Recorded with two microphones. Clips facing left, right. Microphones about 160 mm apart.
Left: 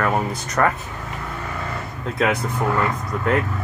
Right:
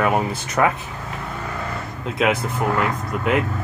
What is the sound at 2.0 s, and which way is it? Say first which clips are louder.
Speech: right 1 dB; centre (ahead or behind).